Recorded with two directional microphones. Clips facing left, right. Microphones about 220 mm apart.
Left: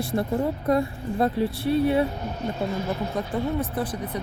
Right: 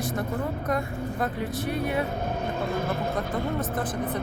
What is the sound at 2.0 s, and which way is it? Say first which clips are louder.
Speech: even; 50° right (ahead or behind).